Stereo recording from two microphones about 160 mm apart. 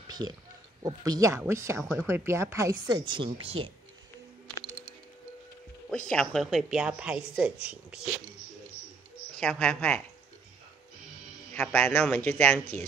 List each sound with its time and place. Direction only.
0.8 s a woman's voice: 25° right (ahead or behind)
1.8 s a woman's voice: 5° right (ahead or behind)
2.0 s a woman's voice: 15° right (ahead or behind); by 3.7 s 35° right (ahead or behind)
5.9 s a woman's voice: 5° left (ahead or behind)
9.4 s speech: 5° left (ahead or behind)
11.5 s speech: 5° left (ahead or behind)